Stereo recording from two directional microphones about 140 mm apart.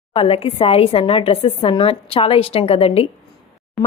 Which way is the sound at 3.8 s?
Centre (ahead or behind).